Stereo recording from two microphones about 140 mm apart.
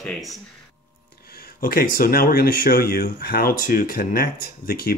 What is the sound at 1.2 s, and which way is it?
Speech, 90° left.